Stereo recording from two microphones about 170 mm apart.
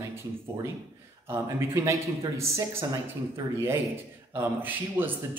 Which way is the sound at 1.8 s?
15° right (ahead or behind).